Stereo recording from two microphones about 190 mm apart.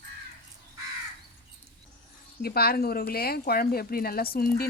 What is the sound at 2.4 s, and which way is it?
Speech, 55° left (ahead or behind).